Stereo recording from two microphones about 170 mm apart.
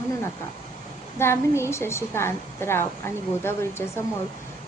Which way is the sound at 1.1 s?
15° left (ahead or behind).